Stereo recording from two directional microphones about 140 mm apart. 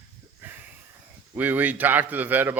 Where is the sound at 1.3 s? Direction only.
10° right (ahead or behind).